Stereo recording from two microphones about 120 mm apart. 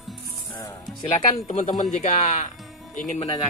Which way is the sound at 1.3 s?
70° left (ahead or behind).